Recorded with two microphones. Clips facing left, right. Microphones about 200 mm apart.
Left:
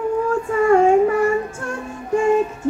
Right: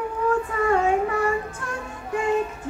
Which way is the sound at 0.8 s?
25° left (ahead or behind).